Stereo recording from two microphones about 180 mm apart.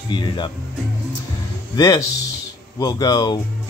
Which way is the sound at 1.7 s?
20° left (ahead or behind).